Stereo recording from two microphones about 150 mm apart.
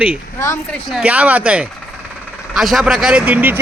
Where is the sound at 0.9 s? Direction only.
5° right (ahead or behind).